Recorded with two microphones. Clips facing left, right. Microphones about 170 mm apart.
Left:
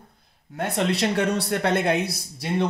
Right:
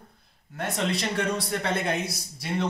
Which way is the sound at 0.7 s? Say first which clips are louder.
Left 5 dB; 70° left (ahead or behind).